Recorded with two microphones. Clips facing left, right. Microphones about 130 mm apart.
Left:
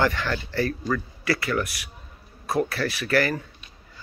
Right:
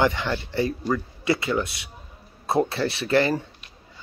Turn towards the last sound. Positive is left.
turn(degrees=-25)  # may be behind; listen again after turning